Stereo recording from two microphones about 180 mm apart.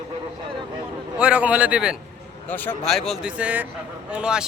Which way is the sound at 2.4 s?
10° left (ahead or behind).